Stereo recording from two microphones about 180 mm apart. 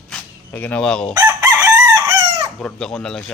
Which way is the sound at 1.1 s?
20° right (ahead or behind).